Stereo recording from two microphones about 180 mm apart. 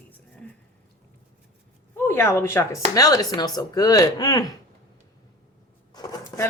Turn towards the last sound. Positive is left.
turn(degrees=20)  # may be behind; listen again after turning